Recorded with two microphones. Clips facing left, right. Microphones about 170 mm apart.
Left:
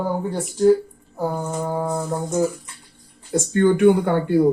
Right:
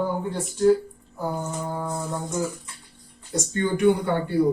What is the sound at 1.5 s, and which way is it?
Speech, 50° left (ahead or behind).